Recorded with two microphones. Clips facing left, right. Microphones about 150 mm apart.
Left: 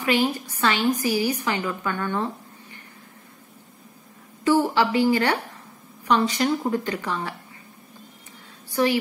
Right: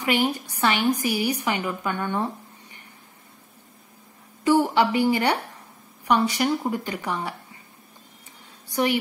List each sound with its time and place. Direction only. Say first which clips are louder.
0.0 s a woman's voice: left 1 dB; 15° right (ahead or behind)
4.5 s a woman's voice: even; 15° right (ahead or behind)
8.6 s a woman's voice: left 2 dB; 15° right (ahead or behind)